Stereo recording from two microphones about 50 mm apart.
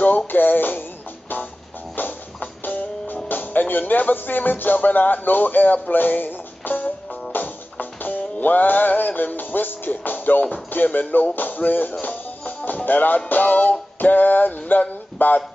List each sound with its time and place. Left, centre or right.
0.0 s music: left
2.0 s music: left
14.7 s a sound: left